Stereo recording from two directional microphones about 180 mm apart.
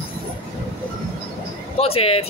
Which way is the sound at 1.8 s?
35° left (ahead or behind).